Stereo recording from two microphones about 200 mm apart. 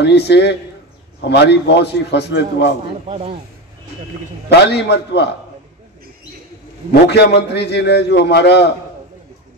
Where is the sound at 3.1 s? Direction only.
30° right (ahead or behind).